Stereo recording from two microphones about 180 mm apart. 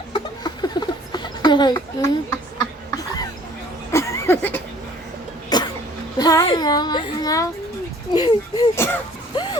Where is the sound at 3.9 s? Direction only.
15° left (ahead or behind).